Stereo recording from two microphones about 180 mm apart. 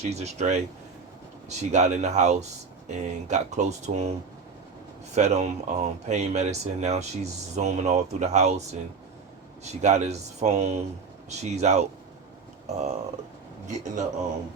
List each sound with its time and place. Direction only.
0.0 s speech: 35° right (ahead or behind)
5.1 s a man's voice: 40° right (ahead or behind)